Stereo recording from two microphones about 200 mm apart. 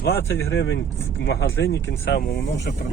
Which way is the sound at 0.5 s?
65° left (ahead or behind).